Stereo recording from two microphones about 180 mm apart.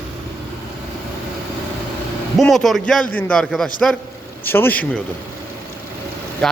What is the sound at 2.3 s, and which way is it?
A man's voice, centre (ahead or behind).